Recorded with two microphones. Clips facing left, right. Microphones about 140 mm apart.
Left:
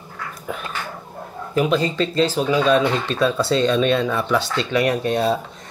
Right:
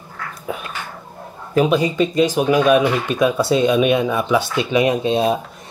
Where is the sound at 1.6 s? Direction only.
15° right (ahead or behind).